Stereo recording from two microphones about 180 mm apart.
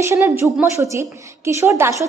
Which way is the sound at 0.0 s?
15° right (ahead or behind).